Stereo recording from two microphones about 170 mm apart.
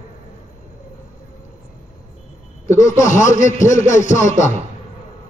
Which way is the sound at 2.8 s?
45° left (ahead or behind).